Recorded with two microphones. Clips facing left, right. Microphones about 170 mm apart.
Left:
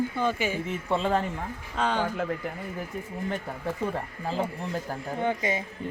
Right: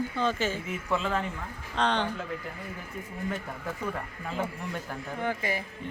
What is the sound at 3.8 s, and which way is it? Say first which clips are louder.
Speech: left 4 dB; 30° left (ahead or behind).